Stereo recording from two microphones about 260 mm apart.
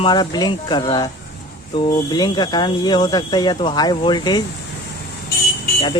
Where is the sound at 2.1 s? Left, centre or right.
Centre.